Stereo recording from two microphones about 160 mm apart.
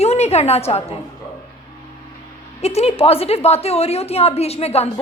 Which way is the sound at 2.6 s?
40° left (ahead or behind).